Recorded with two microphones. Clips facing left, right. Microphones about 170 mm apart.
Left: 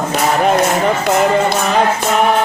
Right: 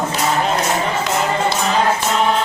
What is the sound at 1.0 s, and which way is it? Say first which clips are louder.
Music: left 6 dB; 60° left (ahead or behind).